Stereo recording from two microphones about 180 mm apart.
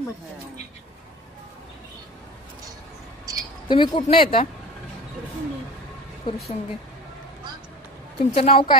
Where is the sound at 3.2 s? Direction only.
20° right (ahead or behind).